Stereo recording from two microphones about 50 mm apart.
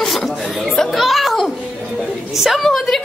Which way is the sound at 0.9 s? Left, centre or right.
Centre.